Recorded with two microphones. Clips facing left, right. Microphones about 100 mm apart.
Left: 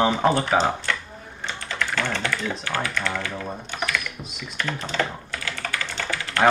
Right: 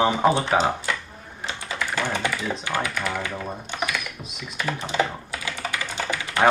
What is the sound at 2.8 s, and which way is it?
Speech, 10° right (ahead or behind).